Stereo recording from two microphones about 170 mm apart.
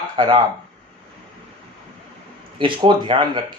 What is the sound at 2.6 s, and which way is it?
Speech, 30° right (ahead or behind).